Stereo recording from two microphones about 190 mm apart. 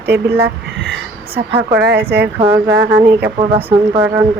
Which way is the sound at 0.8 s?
65° right (ahead or behind).